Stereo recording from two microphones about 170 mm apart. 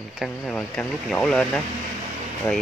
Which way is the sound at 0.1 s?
Centre (ahead or behind).